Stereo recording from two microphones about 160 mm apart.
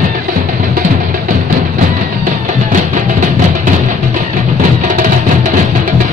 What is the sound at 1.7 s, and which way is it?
Music, 55° right (ahead or behind).